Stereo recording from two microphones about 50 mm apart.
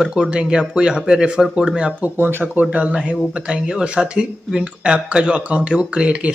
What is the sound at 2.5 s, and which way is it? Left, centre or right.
Speech, right.